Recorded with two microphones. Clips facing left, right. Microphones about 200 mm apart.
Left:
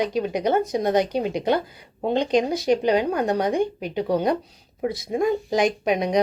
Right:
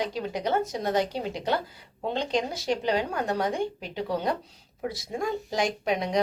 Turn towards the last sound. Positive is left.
turn(degrees=15)  # may be behind; listen again after turning